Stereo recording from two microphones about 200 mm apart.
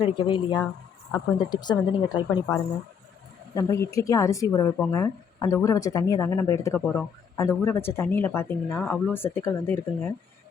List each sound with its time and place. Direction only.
0.0 s speech: 25° left (ahead or behind)
8.8 s speech: centre (ahead or behind)
9.1 s speech: 10° left (ahead or behind)